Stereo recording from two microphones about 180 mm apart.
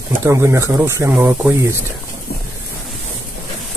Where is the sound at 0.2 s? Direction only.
15° right (ahead or behind).